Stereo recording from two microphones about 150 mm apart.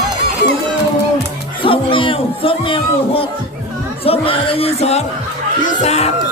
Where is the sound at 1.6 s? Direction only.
35° left (ahead or behind).